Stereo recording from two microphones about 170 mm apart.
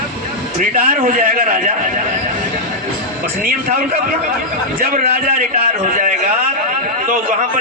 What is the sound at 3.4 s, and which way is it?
Speech, 60° right (ahead or behind).